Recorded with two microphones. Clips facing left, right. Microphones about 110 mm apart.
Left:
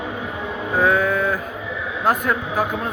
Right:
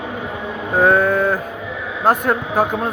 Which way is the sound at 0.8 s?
50° right (ahead or behind).